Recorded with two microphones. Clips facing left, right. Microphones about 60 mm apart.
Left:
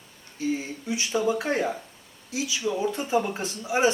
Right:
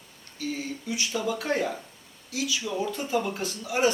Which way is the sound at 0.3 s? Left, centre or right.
Left.